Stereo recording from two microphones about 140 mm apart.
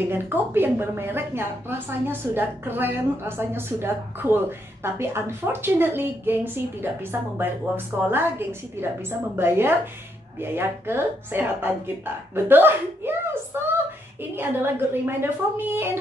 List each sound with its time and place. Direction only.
0.0 s a woman's voice: 15° right (ahead or behind)